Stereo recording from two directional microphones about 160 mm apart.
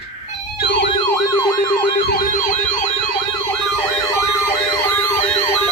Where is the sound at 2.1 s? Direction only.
60° left (ahead or behind).